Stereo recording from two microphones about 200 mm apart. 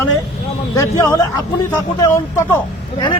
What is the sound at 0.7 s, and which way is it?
Speech, 15° left (ahead or behind).